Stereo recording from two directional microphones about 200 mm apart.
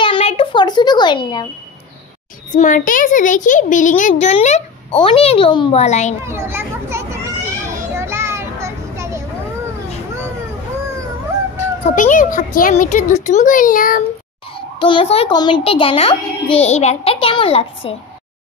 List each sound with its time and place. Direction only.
0.0 s a sound: 30° left (ahead or behind)
2.5 s a child's voice: 40° left (ahead or behind)
6.2 s children playing: 15° right (ahead or behind)
11.8 s a child's voice: 40° left (ahead or behind)
14.8 s a child's voice: 25° left (ahead or behind)